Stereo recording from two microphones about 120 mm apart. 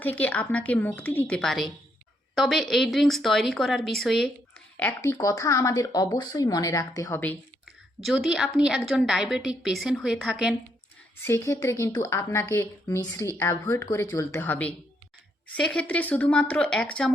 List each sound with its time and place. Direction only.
0.0 s a woman's voice: 15° left (ahead or behind)
4.9 s speech: 25° left (ahead or behind)
7.6 s a woman's voice: 5° right (ahead or behind)
11.2 s speech: 20° left (ahead or behind)
14.4 s a woman's voice: 15° left (ahead or behind)